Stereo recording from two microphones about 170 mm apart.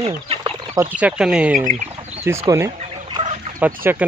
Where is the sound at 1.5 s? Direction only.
45° right (ahead or behind).